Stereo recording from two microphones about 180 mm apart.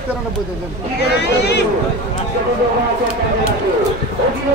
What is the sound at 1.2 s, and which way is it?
Speech, 70° left (ahead or behind).